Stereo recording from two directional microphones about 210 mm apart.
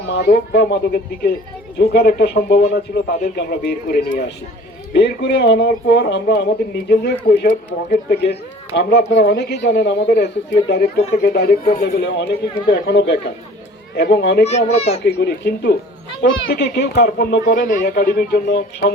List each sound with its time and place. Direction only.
0.1 s speech: 45° left (ahead or behind)
12.7 s speech: 55° left (ahead or behind)
14.4 s a child's voice: 30° left (ahead or behind)
15.0 s speech: 50° left (ahead or behind)
17.7 s speech: 40° left (ahead or behind)